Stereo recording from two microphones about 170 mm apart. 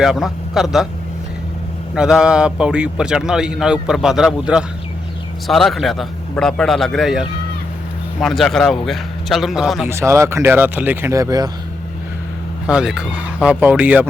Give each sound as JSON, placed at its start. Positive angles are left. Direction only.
{"t": 0.0, "sound": "speech", "side_deg": 0}
{"t": 2.0, "sound": "speech", "side_deg": -5}
{"t": 9.8, "sound": "speech", "side_deg": -15}
{"t": 12.6, "sound": "speech", "side_deg": -5}